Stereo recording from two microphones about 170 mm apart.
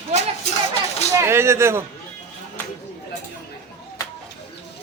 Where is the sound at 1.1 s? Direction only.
15° right (ahead or behind).